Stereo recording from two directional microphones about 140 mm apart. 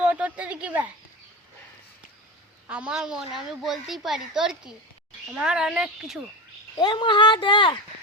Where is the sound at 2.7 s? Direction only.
5° right (ahead or behind).